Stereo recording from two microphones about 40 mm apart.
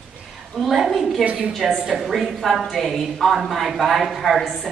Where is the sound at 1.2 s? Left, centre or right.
Right.